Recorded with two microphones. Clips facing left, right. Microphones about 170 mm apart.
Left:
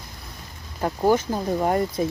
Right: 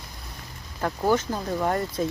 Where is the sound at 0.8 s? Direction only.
15° left (ahead or behind).